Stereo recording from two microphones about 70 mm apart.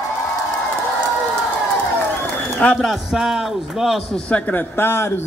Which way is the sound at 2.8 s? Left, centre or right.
Centre.